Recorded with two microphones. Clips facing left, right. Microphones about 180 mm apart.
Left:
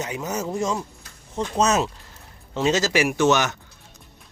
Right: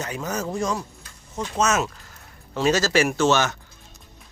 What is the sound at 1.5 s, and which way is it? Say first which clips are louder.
Speech: left 2 dB; 35° left (ahead or behind).